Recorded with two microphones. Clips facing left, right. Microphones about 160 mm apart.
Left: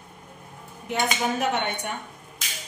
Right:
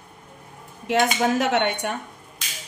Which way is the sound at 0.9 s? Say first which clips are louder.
Right 7 dB; 90° right.